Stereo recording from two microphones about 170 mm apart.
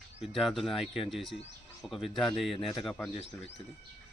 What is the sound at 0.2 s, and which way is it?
Speech, centre (ahead or behind).